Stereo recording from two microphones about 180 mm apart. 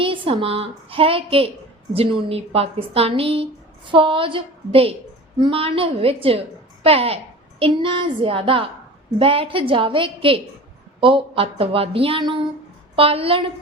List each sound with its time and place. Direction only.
0.0 s a woman's voice: 30° right (ahead or behind)